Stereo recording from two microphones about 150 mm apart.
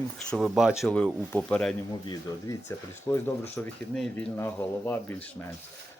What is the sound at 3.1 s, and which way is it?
Speech, 15° left (ahead or behind).